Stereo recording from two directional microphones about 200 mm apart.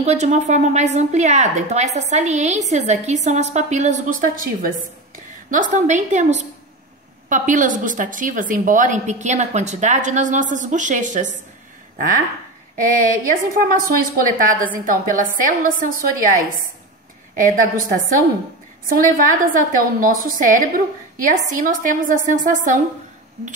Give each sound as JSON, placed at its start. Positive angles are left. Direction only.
{"t": 0.0, "sound": "a woman's voice", "side_deg": -35}
{"t": 13.3, "sound": "a woman's voice", "side_deg": -45}
{"t": 17.4, "sound": "a woman's voice", "side_deg": -40}